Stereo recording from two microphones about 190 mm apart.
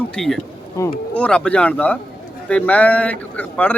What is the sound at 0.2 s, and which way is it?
Speech, centre (ahead or behind).